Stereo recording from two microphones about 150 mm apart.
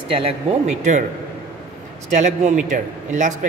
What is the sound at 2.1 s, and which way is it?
A woman's voice, 50° right (ahead or behind).